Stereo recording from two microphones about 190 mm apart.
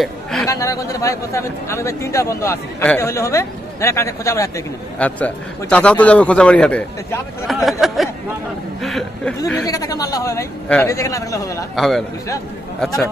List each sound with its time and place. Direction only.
0.0 s chatter: centre (ahead or behind)
0.5 s a man's voice: 15° left (ahead or behind); by 9.3 s centre (ahead or behind)
9.7 s a man's voice: 20° left (ahead or behind)
11.7 s speech: centre (ahead or behind)